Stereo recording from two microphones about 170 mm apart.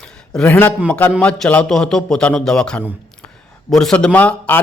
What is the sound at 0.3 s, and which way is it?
A man's voice, 10° left (ahead or behind).